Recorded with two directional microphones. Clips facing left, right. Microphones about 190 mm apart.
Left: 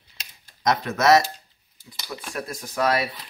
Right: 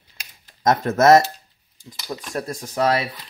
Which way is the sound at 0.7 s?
45° right (ahead or behind).